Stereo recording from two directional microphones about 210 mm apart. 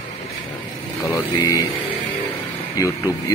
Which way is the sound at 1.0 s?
15° left (ahead or behind).